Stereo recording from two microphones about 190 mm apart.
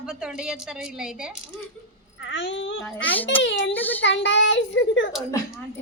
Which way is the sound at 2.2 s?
75° left (ahead or behind).